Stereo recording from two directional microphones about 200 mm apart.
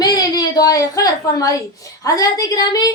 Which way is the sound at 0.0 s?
20° left (ahead or behind).